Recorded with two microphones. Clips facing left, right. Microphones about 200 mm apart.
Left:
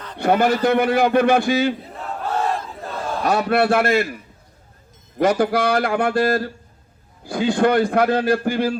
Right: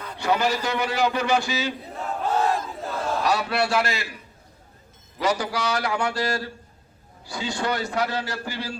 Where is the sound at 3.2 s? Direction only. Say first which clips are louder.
Left 8 dB; 50° left (ahead or behind).